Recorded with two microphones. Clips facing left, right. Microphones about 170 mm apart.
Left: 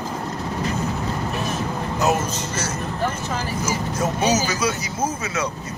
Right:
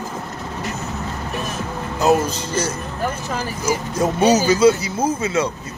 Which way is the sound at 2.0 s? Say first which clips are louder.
Right 5 dB; 30° right (ahead or behind).